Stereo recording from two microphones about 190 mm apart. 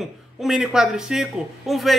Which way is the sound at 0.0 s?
Centre (ahead or behind).